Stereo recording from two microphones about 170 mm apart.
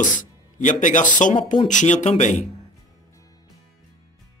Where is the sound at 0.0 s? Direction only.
50° left (ahead or behind).